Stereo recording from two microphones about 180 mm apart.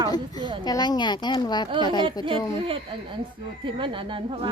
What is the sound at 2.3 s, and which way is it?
Speech, 30° right (ahead or behind).